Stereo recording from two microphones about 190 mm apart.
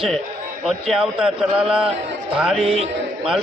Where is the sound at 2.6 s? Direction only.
30° right (ahead or behind).